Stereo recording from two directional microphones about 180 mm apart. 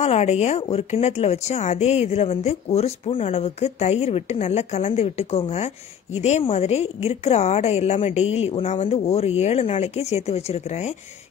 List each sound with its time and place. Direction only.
0.0 s speech: 40° left (ahead or behind)